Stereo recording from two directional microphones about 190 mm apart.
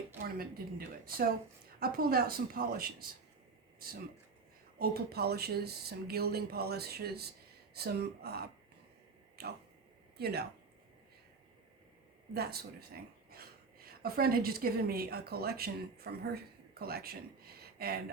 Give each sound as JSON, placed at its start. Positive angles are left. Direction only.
{"t": 0.3, "sound": "a woman's voice", "side_deg": -50}
{"t": 4.8, "sound": "speech", "side_deg": -55}
{"t": 9.4, "sound": "a sound", "side_deg": -55}
{"t": 10.2, "sound": "speech", "side_deg": -55}
{"t": 12.3, "sound": "a woman's voice", "side_deg": -55}